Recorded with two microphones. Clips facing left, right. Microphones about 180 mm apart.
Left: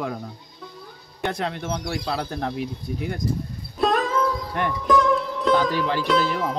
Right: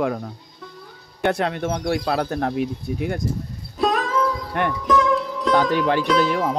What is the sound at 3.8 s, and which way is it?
Music, centre (ahead or behind).